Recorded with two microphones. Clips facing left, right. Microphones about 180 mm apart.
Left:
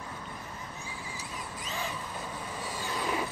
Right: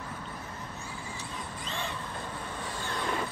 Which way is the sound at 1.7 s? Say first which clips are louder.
Even; 5° left (ahead or behind).